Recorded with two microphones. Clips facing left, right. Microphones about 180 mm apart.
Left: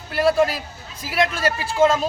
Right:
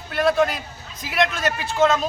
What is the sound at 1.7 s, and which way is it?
Speech, 10° left (ahead or behind).